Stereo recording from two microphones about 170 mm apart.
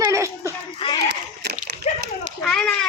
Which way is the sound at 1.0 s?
75° right (ahead or behind).